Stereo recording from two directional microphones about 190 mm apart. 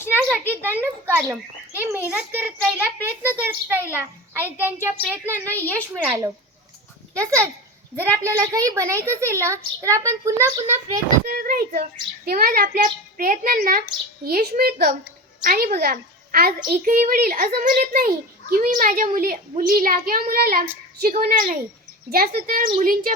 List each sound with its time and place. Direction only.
0.2 s a child's voice: 10° right (ahead or behind)
5.5 s a woman's voice: 10° left (ahead or behind)
5.9 s a child's voice: 5° right (ahead or behind)
11.3 s a child's voice: 45° right (ahead or behind)